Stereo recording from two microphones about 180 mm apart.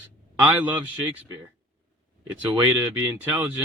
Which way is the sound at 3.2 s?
10° right (ahead or behind).